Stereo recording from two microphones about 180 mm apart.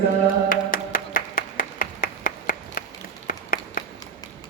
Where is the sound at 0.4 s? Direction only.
50° left (ahead or behind).